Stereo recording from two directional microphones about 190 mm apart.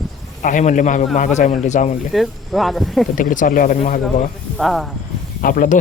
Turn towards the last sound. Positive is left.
turn(degrees=45)  # may be behind; listen again after turning